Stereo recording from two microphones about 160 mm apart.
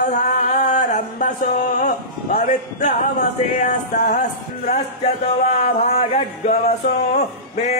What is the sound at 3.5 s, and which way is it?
Speech, 50° left (ahead or behind).